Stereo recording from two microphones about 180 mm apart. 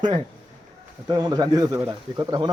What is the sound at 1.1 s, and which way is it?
Speech, 20° right (ahead or behind).